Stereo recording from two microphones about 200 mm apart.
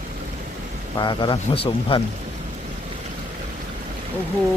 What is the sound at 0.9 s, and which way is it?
Speech, 20° left (ahead or behind).